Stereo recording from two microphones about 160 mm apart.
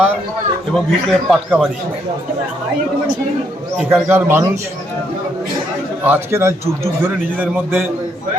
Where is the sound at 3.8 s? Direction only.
10° right (ahead or behind).